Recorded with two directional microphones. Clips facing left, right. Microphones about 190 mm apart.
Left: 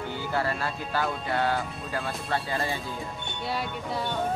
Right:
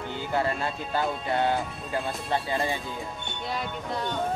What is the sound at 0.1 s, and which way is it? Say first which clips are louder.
Speech: right 2 dB; 20° right (ahead or behind).